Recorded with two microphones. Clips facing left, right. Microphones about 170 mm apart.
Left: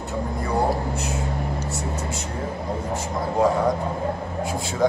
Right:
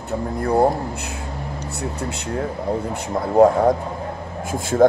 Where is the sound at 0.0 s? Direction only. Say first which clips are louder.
Right 4 dB; 55° right (ahead or behind).